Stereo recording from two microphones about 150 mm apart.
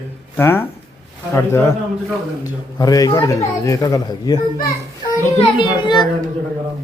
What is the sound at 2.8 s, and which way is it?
Speech, 25° left (ahead or behind).